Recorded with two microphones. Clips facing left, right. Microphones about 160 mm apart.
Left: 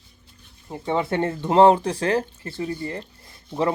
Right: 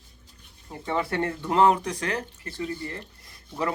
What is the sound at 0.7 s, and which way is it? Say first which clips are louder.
Speech: left 4 dB; 20° left (ahead or behind).